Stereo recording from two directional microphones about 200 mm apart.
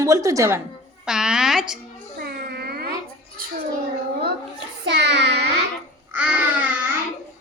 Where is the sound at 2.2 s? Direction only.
50° right (ahead or behind).